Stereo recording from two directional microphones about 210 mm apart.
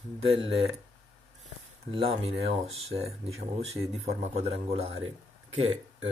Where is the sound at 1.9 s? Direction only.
30° right (ahead or behind).